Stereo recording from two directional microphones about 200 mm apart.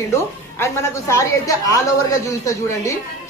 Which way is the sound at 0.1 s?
15° left (ahead or behind).